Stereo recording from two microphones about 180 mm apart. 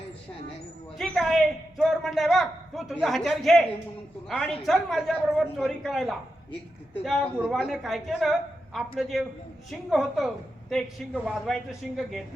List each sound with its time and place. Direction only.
0.9 s a woman's voice: centre (ahead or behind)